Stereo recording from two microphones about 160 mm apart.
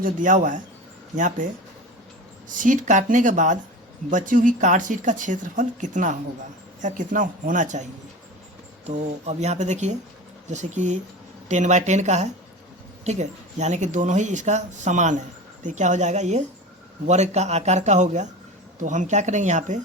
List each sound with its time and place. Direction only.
0.0 s speech: 55° right (ahead or behind)
2.5 s speech: 55° right (ahead or behind)
8.9 s speech: 45° right (ahead or behind)